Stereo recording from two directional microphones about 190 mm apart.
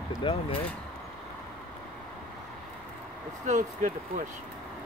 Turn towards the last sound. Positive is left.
turn(degrees=-40)  # may be behind; listen again after turning